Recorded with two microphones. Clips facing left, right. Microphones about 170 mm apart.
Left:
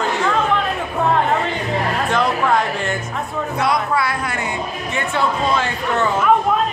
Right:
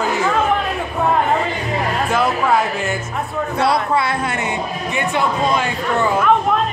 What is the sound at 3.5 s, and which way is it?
Speech, 25° right (ahead or behind).